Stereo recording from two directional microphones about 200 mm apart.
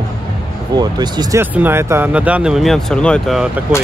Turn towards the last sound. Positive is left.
turn(degrees=0)  # may be behind; listen again after turning